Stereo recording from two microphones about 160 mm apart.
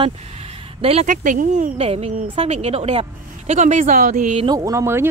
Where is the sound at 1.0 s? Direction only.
55° right (ahead or behind).